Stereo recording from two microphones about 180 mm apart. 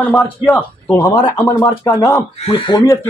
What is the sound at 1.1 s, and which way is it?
Speech, 20° left (ahead or behind).